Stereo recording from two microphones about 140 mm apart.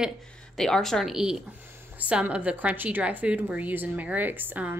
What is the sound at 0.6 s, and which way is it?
A woman's voice, 5° left (ahead or behind).